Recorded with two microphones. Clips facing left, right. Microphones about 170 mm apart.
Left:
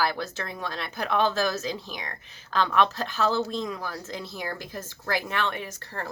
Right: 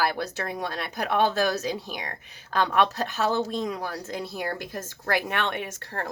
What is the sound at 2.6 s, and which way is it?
Speech, 50° right (ahead or behind).